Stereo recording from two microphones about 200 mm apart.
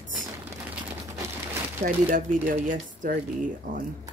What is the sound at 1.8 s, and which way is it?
Speech, 45° right (ahead or behind).